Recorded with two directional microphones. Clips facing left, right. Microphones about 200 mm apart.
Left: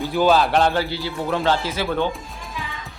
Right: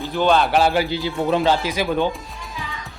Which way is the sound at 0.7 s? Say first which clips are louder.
Right 3 dB; 15° right (ahead or behind).